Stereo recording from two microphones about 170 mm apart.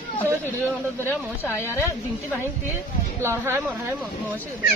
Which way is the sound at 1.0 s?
15° left (ahead or behind).